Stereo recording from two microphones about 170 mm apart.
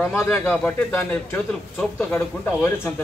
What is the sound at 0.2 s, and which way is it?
Speech, 15° left (ahead or behind).